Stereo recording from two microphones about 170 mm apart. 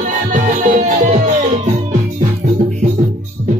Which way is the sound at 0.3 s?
50° right (ahead or behind).